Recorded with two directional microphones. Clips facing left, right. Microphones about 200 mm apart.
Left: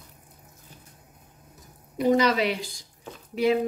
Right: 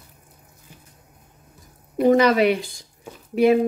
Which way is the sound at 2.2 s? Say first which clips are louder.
Right 6 dB; 55° right (ahead or behind).